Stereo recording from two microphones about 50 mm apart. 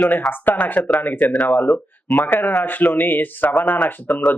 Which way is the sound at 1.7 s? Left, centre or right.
Centre.